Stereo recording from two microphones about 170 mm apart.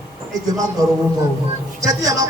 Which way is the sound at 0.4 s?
20° right (ahead or behind).